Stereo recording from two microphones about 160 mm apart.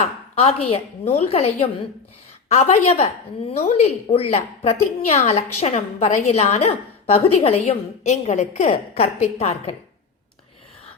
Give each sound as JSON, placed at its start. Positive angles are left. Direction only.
{"t": 0.0, "sound": "a woman's voice", "side_deg": 40}